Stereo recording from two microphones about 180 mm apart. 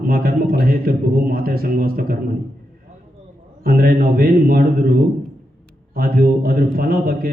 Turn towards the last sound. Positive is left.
turn(degrees=-55)  # may be behind; listen again after turning